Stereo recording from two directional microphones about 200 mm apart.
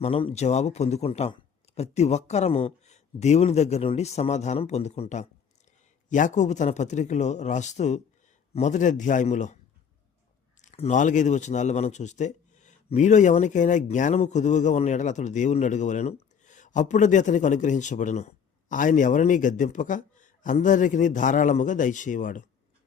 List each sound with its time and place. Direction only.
0.0 s speech: 30° left (ahead or behind)
10.6 s speech: 35° left (ahead or behind)